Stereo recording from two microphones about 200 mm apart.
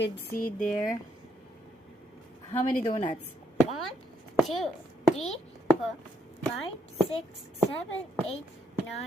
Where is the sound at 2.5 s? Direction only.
35° left (ahead or behind).